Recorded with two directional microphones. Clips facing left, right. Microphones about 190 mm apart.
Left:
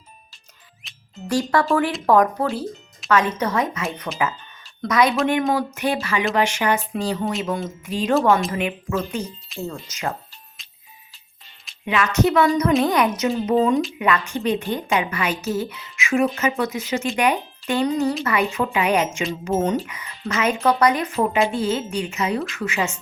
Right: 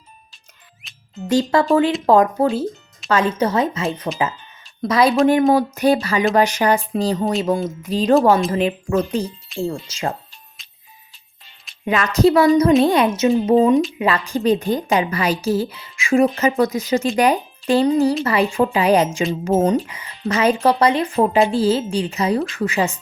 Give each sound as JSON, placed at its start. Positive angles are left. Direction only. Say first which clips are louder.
{"t": 0.8, "sound": "music", "louder": "left 1 dB", "side_deg": 0}
{"t": 1.3, "sound": "a woman's voice", "louder": "right 4 dB", "side_deg": -25}
{"t": 10.6, "sound": "music", "louder": "even", "side_deg": 0}
{"t": 11.9, "sound": "a woman's voice", "louder": "right 4 dB", "side_deg": -35}